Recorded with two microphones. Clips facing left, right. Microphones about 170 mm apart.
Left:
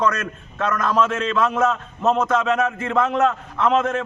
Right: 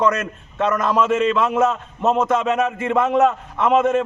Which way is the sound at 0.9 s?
5° right (ahead or behind).